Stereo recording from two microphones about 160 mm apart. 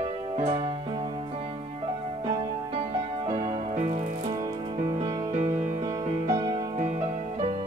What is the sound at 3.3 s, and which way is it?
Music, 50° right (ahead or behind).